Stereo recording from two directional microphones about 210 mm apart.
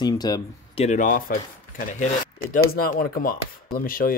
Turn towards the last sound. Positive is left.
turn(degrees=40)  # may be behind; listen again after turning